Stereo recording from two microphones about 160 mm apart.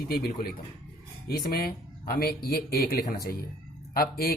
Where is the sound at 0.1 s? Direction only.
70° left (ahead or behind).